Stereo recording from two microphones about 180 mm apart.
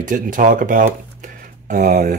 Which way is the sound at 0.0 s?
45° right (ahead or behind).